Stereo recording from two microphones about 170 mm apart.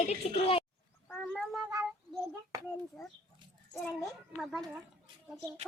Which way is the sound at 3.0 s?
5° left (ahead or behind).